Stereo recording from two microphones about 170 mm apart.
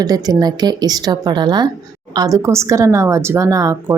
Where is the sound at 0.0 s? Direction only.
20° right (ahead or behind).